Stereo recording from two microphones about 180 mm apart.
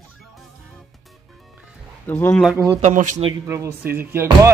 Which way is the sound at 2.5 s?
15° right (ahead or behind).